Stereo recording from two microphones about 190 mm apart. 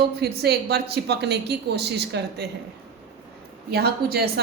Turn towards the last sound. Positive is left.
turn(degrees=-55)  # may be behind; listen again after turning